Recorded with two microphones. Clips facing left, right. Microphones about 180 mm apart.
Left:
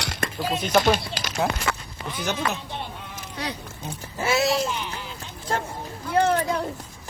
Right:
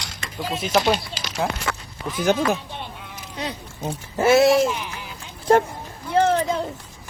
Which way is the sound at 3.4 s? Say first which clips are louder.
Right 2 dB; 20° right (ahead or behind).